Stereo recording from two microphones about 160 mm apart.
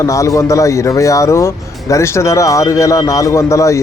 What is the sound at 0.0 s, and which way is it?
Speech, 20° left (ahead or behind).